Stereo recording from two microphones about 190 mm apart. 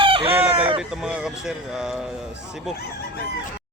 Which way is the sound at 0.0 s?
30° right (ahead or behind).